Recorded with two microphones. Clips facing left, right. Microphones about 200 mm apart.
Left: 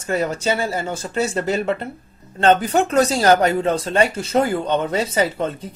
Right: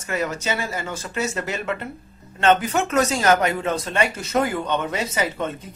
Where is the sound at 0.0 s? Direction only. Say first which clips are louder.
Left 4 dB; 30° left (ahead or behind).